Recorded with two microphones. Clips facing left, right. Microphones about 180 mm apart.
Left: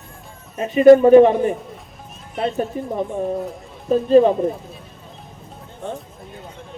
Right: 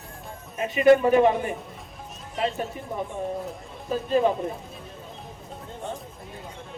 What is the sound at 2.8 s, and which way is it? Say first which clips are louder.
Speech: left 11 dB; 40° left (ahead or behind).